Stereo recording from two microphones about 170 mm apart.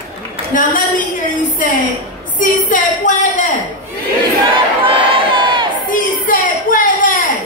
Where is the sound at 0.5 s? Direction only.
55° left (ahead or behind).